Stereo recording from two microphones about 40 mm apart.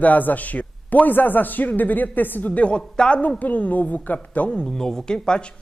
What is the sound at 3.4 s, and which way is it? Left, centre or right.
Speech, left.